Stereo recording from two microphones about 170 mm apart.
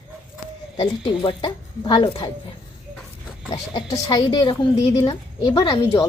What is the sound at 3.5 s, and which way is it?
Speech, 20° left (ahead or behind).